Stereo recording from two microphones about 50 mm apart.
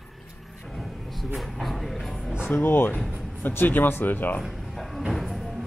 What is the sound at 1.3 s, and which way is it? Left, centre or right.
Vehicle, centre.